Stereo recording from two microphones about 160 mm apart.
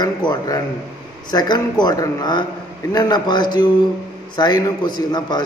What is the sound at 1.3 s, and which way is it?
A man's voice, 25° left (ahead or behind).